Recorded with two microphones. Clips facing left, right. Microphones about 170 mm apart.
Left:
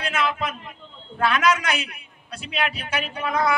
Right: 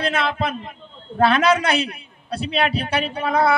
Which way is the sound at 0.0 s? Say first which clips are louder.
Right 3 dB; 30° right (ahead or behind).